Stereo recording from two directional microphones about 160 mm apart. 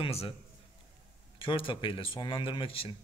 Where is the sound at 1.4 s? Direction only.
35° left (ahead or behind).